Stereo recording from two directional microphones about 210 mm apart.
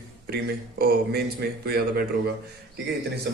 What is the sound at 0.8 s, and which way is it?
A man's voice, 50° right (ahead or behind).